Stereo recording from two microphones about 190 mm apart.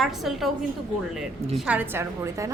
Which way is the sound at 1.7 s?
10° right (ahead or behind).